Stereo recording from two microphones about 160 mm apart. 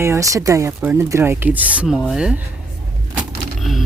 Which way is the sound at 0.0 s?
20° right (ahead or behind).